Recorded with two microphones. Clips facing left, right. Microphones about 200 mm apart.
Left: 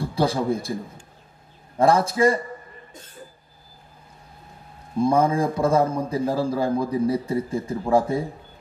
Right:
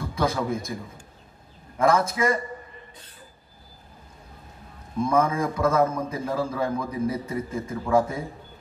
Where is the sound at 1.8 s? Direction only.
30° left (ahead or behind).